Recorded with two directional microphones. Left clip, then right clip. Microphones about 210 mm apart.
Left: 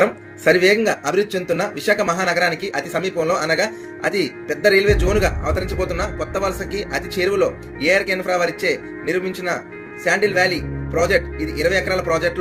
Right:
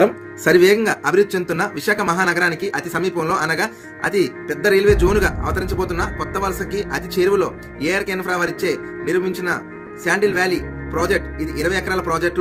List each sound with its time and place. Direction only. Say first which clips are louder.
0.4 s speech: right 1 dB; 55° right (ahead or behind)